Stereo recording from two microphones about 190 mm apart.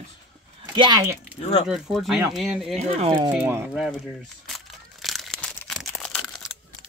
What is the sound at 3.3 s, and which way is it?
Speech, 10° right (ahead or behind).